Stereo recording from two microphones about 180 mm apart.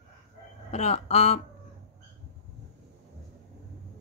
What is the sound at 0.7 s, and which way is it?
Speech, 40° left (ahead or behind).